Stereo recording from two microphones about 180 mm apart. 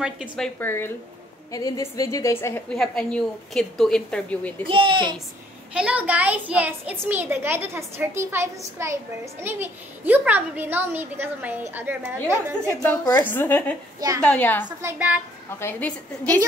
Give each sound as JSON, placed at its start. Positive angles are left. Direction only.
{"t": 0.0, "sound": "a woman's voice", "side_deg": -5}
{"t": 0.6, "sound": "a woman's voice", "side_deg": 10}
{"t": 2.7, "sound": "a woman's voice", "side_deg": 5}
{"t": 4.6, "sound": "speech", "side_deg": -30}
{"t": 5.8, "sound": "a child's voice", "side_deg": -5}
{"t": 13.0, "sound": "a woman's voice", "side_deg": 15}
{"t": 13.9, "sound": "a woman's voice", "side_deg": -20}
{"t": 14.2, "sound": "a woman's voice", "side_deg": 10}
{"t": 14.8, "sound": "a child's voice", "side_deg": -10}